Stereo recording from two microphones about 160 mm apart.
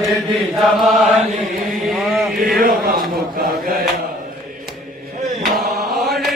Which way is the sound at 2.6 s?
65° right (ahead or behind).